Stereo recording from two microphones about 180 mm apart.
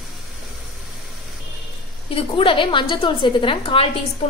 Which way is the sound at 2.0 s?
30° left (ahead or behind).